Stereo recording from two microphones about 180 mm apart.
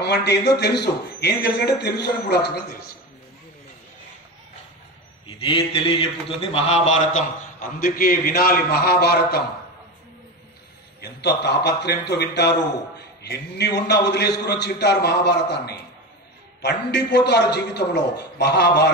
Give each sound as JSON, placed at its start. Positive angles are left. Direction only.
{"t": 0.0, "sound": "a man's voice", "side_deg": 70}
{"t": 5.2, "sound": "speech", "side_deg": 30}
{"t": 7.8, "sound": "a man's voice", "side_deg": 55}
{"t": 11.0, "sound": "a man's voice", "side_deg": 65}